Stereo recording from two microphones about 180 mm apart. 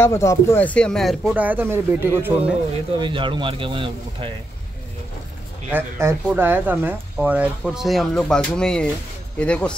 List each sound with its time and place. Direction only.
0.0 s speech: 15° left (ahead or behind); by 2.5 s 10° right (ahead or behind)
3.0 s speech: 30° right (ahead or behind)
5.7 s speech: 15° right (ahead or behind); by 9.8 s 5° left (ahead or behind)